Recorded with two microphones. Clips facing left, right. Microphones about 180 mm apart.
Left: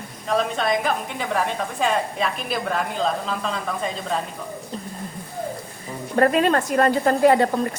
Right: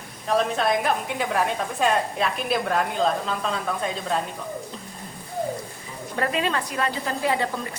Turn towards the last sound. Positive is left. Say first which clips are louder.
# left 8 dB
turn(degrees=50)  # may be behind; listen again after turning